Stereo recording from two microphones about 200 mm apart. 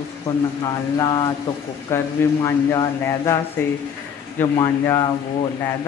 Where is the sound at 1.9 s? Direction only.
15° left (ahead or behind).